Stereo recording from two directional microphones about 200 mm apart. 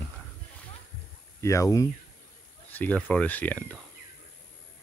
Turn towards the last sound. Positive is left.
turn(degrees=5)  # may be behind; listen again after turning